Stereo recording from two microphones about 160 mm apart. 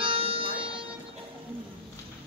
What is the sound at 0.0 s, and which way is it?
Music, 35° right (ahead or behind).